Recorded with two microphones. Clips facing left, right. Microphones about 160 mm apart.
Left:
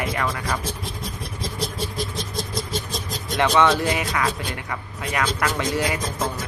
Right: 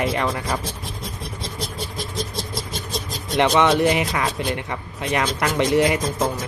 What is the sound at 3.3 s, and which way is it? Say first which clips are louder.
Speech: right 2 dB; 20° right (ahead or behind).